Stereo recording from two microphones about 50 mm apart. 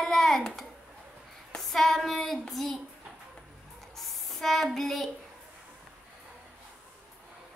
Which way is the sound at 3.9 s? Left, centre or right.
Centre.